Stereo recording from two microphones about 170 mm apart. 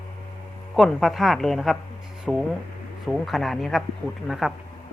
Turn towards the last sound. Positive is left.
turn(degrees=0)  # may be behind; listen again after turning